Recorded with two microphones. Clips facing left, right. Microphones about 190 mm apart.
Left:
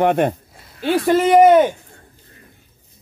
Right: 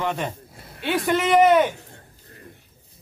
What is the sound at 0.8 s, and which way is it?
Speech, 35° left (ahead or behind).